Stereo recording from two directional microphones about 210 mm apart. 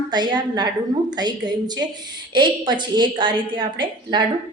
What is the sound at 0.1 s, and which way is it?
A woman's voice, 20° right (ahead or behind).